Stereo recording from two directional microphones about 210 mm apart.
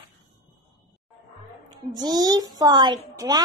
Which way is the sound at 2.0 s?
20° right (ahead or behind).